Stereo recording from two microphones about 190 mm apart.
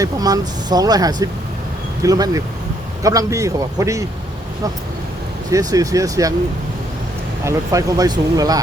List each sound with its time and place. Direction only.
0.0 s a man's voice: 20° right (ahead or behind)
5.5 s a man's voice: 20° right (ahead or behind)
7.4 s speech: 15° right (ahead or behind)